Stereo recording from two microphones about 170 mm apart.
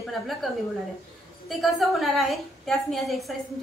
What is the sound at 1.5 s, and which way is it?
A woman's voice, centre (ahead or behind).